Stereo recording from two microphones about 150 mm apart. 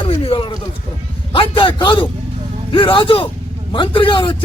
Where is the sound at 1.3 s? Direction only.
35° left (ahead or behind).